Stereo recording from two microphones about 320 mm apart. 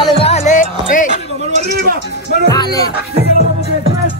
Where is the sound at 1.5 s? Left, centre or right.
Right.